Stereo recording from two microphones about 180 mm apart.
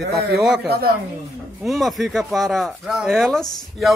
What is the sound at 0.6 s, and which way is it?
Speech, 60° right (ahead or behind).